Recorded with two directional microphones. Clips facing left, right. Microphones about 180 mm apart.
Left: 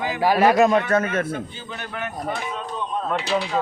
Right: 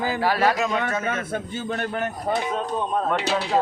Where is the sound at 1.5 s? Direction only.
50° right (ahead or behind).